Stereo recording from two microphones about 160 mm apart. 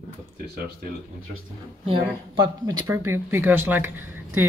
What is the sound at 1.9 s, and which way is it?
Speech, 30° right (ahead or behind).